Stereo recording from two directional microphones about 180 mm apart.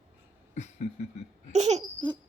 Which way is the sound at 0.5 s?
40° left (ahead or behind).